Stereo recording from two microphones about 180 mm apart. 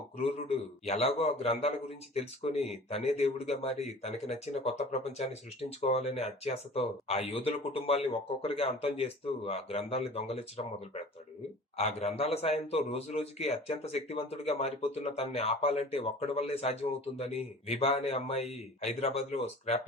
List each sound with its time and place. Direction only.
0.2 s a man's voice: 35° left (ahead or behind)
11.8 s a man's voice: 35° left (ahead or behind)